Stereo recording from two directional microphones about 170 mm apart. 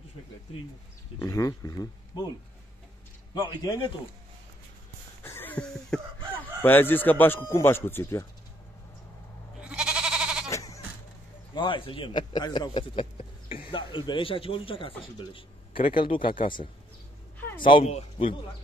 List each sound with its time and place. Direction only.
1.2 s speech: 20° left (ahead or behind)
3.3 s speech: 20° left (ahead or behind)
5.2 s a sound: 10° left (ahead or behind)
6.6 s speech: 10° left (ahead or behind)
9.6 s goat: 5° right (ahead or behind)
10.5 s sheep: 20° left (ahead or behind)
11.5 s speech: 30° left (ahead or behind)
17.6 s speech: 30° left (ahead or behind)